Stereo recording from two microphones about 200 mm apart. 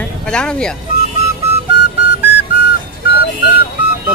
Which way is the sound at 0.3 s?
5° left (ahead or behind).